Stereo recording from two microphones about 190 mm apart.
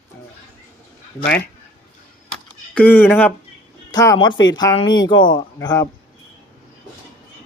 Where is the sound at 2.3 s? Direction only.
5° left (ahead or behind).